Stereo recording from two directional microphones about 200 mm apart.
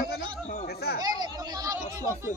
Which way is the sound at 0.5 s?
45° left (ahead or behind).